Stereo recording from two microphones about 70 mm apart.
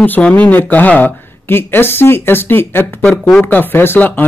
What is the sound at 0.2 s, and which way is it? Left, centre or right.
A woman's voice, left.